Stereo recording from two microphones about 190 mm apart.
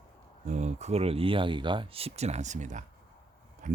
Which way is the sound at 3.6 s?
40° right (ahead or behind).